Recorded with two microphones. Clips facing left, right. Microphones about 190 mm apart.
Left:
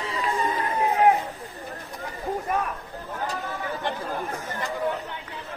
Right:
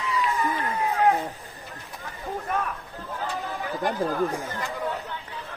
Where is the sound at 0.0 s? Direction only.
35° left (ahead or behind).